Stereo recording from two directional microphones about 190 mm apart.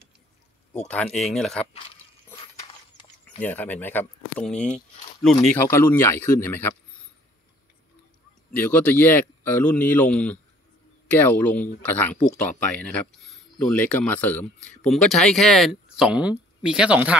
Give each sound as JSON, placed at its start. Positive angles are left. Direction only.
{"t": 0.8, "sound": "speech", "side_deg": 5}
{"t": 3.3, "sound": "speech", "side_deg": 10}
{"t": 8.5, "sound": "speech", "side_deg": 10}